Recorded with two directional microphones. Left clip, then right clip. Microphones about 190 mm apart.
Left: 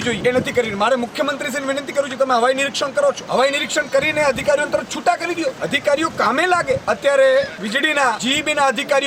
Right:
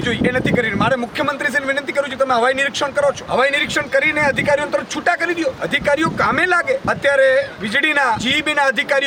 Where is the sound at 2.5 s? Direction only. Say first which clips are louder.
Right 1 dB; 35° right (ahead or behind).